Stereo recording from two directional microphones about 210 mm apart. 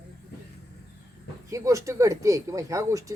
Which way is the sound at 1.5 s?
15° right (ahead or behind).